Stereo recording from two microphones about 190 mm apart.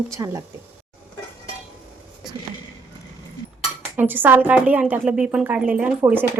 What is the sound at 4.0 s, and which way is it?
A woman's voice, 10° right (ahead or behind).